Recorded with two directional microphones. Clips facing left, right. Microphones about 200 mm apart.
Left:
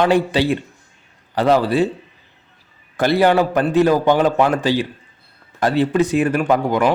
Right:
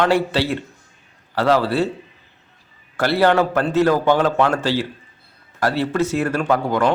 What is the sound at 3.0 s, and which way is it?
Speech, 15° left (ahead or behind).